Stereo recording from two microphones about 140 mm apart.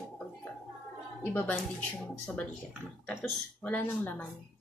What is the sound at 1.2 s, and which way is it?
Speech, 15° left (ahead or behind).